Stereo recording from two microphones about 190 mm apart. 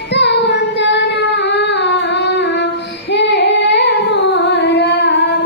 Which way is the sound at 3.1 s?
65° left (ahead or behind).